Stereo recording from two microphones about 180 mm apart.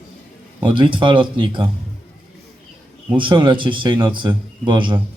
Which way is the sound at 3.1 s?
25° right (ahead or behind).